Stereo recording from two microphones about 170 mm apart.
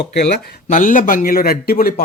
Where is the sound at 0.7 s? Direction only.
50° left (ahead or behind).